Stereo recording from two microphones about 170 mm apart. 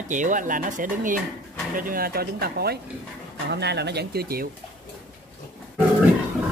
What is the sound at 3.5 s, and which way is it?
Speech, 80° right.